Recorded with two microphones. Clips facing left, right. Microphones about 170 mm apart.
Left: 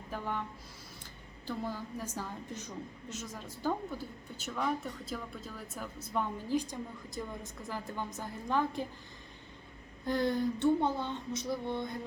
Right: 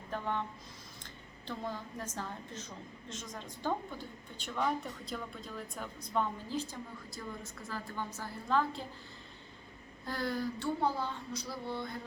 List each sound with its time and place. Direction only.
0.1 s speech: 10° left (ahead or behind)
1.5 s a woman's voice: 10° left (ahead or behind)
10.1 s speech: 20° left (ahead or behind)